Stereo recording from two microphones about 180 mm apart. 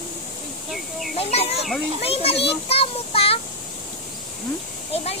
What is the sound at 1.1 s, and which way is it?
Chicken, 35° left (ahead or behind).